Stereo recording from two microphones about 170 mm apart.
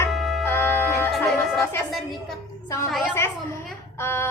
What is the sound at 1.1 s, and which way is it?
Music, centre (ahead or behind).